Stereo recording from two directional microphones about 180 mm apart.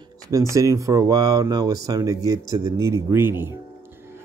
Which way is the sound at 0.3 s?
15° right (ahead or behind).